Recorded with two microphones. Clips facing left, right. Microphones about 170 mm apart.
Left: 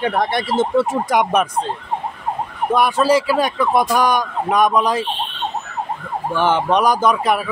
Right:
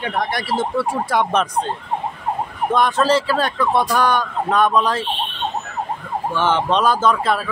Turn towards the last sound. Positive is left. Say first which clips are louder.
# left 1 dB
turn(degrees=15)  # may be behind; listen again after turning